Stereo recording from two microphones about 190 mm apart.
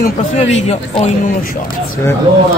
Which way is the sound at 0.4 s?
35° left (ahead or behind).